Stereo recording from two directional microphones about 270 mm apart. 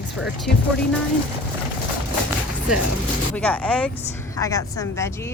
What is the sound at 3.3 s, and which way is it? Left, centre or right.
Speech, centre.